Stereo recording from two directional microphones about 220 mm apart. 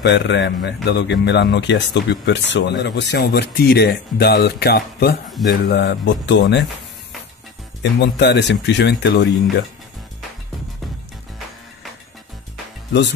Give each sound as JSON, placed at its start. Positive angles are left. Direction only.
{"t": 0.0, "sound": "speech", "side_deg": 55}
{"t": 8.0, "sound": "speech", "side_deg": 50}